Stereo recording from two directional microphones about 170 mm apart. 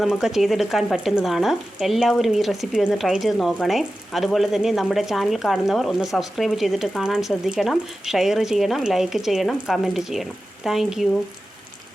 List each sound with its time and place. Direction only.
0.0 s speech: centre (ahead or behind)